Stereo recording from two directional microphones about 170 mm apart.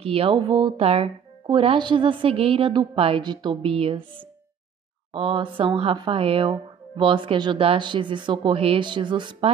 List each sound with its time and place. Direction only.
0.0 s speech: 35° right (ahead or behind)
5.1 s speech: 30° right (ahead or behind)